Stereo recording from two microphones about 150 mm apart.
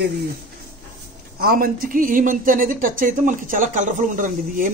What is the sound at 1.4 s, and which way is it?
Speech, 80° right.